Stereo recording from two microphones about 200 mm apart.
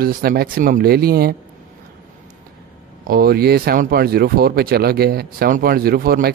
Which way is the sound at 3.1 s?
50° right (ahead or behind).